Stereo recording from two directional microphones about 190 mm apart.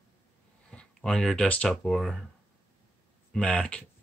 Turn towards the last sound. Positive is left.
turn(degrees=5)  # may be behind; listen again after turning